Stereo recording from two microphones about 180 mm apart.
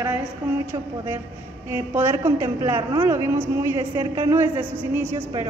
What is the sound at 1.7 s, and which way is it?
A woman's voice, 15° right (ahead or behind).